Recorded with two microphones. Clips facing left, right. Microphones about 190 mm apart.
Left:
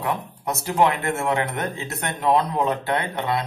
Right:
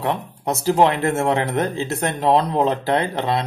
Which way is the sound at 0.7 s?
30° right (ahead or behind).